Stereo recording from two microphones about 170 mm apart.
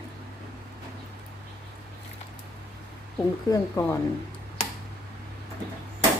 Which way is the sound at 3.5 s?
20° left (ahead or behind).